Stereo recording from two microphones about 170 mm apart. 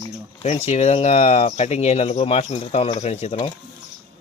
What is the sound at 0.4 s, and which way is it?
Speech, 40° left (ahead or behind).